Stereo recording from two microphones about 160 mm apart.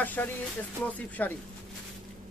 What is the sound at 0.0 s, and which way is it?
Speech, 10° left (ahead or behind).